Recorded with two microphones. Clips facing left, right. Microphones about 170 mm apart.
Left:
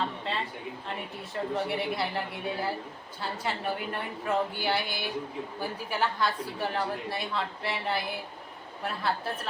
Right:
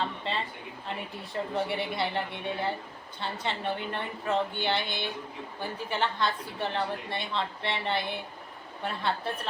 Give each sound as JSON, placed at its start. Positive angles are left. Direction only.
{"t": 1.3, "sound": "a woman's voice", "side_deg": 0}